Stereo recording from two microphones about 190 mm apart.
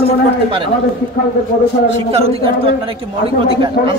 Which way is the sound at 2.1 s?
30° right (ahead or behind).